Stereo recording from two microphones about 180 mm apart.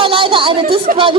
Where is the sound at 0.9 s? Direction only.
45° right (ahead or behind).